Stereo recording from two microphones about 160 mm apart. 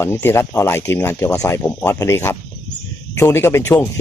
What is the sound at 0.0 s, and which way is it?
A man's voice, 15° left (ahead or behind).